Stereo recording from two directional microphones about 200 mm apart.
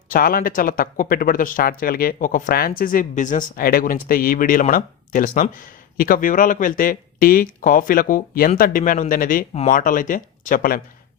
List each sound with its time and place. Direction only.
0.1 s speech: 45° left (ahead or behind)